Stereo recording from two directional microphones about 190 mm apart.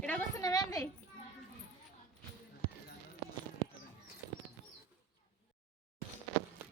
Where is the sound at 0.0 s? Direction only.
10° left (ahead or behind).